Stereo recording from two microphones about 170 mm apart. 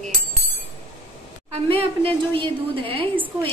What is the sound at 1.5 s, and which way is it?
A woman's voice, 35° right (ahead or behind).